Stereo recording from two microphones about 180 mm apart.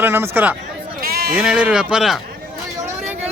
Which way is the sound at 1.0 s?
55° right (ahead or behind).